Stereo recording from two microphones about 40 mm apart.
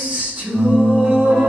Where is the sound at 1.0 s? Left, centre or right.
Right.